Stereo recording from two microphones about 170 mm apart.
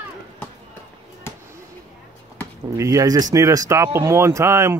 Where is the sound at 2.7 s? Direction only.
20° right (ahead or behind).